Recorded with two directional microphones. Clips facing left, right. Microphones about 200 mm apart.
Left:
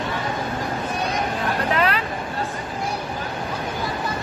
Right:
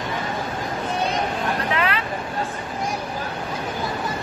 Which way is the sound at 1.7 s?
40° left (ahead or behind).